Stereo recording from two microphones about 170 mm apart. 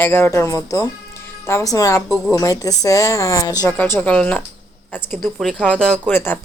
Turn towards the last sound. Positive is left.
turn(degrees=10)  # may be behind; listen again after turning